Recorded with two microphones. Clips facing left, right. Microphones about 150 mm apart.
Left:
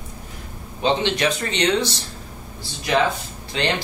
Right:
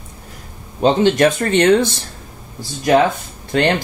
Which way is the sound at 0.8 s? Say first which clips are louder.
Right 7 dB; 45° right (ahead or behind).